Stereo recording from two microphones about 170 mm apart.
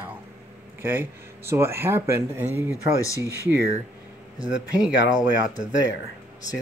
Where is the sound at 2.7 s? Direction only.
20° left (ahead or behind).